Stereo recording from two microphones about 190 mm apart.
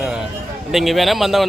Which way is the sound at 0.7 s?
Centre (ahead or behind).